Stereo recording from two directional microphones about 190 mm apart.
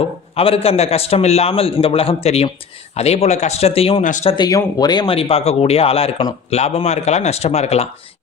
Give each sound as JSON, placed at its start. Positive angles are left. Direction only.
{"t": 0.3, "sound": "speech", "side_deg": 30}
{"t": 4.0, "sound": "speech", "side_deg": 40}
{"t": 4.3, "sound": "speech", "side_deg": 20}